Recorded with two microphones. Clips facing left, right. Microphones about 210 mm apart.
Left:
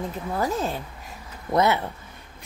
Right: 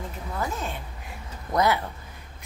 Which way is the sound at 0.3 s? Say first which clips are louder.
Left 5 dB; 35° left (ahead or behind).